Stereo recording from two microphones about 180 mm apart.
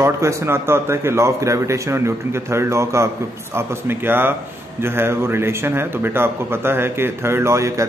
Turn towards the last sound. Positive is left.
turn(degrees=-15)  # may be behind; listen again after turning